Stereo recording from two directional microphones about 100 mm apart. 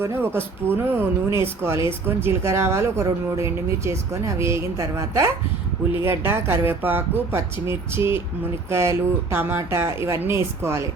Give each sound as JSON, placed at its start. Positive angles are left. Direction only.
{"t": 0.0, "sound": "speech", "side_deg": -20}
{"t": 6.0, "sound": "speech", "side_deg": -25}